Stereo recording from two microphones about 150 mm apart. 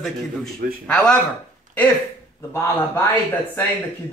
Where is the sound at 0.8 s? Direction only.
5° left (ahead or behind).